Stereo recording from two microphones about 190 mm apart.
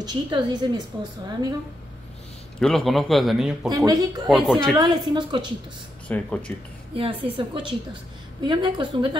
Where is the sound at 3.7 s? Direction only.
20° right (ahead or behind).